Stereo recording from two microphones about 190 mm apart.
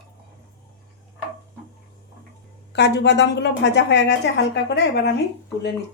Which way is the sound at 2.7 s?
65° left (ahead or behind).